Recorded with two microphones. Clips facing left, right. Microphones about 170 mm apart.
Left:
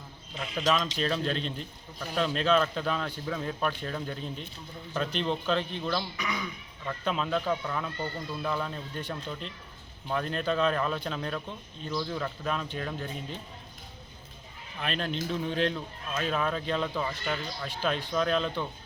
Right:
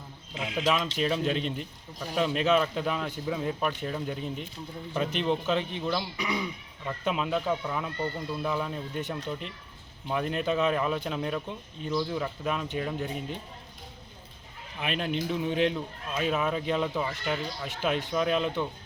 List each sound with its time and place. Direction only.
0.5 s a man's voice: 5° right (ahead or behind)
6.1 s speech: 30° right (ahead or behind)
6.8 s a man's voice: 10° right (ahead or behind)
10.1 s a man's voice: 10° right (ahead or behind)
14.8 s a man's voice: 10° right (ahead or behind)